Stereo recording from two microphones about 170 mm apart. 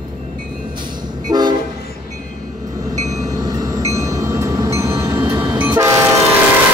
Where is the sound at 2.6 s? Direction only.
20° right (ahead or behind).